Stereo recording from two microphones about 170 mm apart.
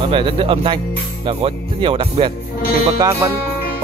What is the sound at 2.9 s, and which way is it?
Speech, 20° right (ahead or behind).